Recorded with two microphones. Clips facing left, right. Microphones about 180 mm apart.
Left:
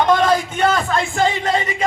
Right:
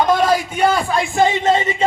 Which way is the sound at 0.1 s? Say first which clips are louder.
Even; 10° right (ahead or behind).